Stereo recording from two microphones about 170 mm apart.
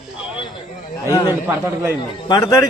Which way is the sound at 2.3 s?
20° left (ahead or behind).